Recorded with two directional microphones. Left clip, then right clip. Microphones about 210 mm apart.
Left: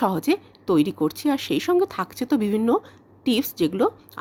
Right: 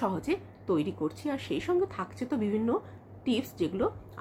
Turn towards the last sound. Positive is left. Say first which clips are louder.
# left 9 dB
turn(degrees=50)  # may be behind; listen again after turning